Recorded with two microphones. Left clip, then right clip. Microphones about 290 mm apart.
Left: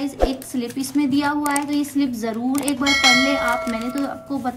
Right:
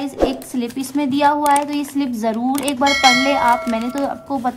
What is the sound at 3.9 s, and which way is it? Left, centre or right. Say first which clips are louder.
Speech: right 4 dB; right.